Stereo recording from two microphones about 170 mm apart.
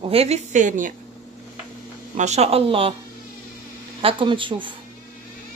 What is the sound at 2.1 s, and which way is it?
Speech, 40° right (ahead or behind).